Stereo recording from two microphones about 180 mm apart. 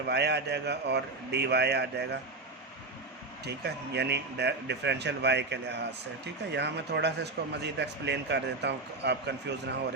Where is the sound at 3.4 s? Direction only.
65° right (ahead or behind).